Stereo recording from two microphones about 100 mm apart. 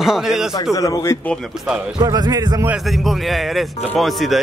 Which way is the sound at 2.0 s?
40° right (ahead or behind).